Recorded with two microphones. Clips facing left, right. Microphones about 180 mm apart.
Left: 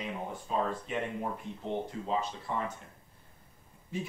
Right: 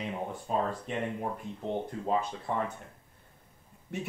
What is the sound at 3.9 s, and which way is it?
Speech, 70° right (ahead or behind).